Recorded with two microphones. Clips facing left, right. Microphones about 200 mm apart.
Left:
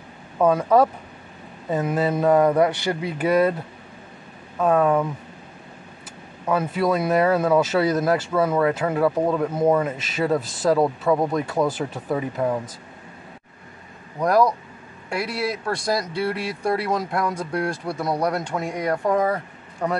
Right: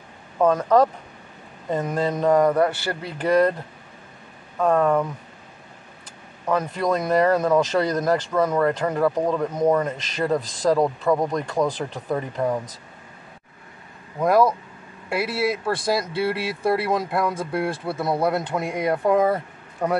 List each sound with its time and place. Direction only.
0.4 s speech: 10° left (ahead or behind)
4.6 s speech: 5° left (ahead or behind)
6.4 s speech: 5° left (ahead or behind)
14.2 s speech: centre (ahead or behind)